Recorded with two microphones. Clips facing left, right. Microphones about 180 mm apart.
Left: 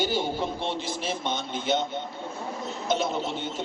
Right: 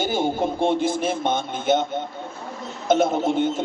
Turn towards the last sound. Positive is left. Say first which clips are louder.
# right 9 dB
turn(degrees=-50)  # may be behind; listen again after turning